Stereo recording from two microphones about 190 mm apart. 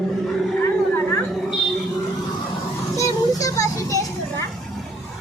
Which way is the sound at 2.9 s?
15° left (ahead or behind).